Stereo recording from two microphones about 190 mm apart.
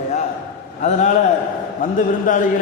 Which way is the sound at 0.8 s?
40° left (ahead or behind).